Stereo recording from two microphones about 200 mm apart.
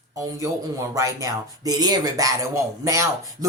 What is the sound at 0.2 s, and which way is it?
Speech, 15° right (ahead or behind).